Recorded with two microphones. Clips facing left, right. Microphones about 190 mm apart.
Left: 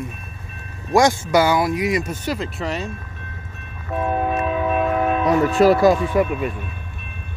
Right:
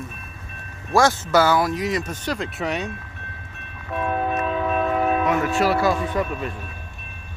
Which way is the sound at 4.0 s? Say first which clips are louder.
Left 2 dB; 20° left (ahead or behind).